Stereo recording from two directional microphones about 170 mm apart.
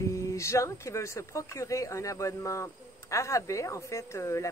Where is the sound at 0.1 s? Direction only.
20° left (ahead or behind).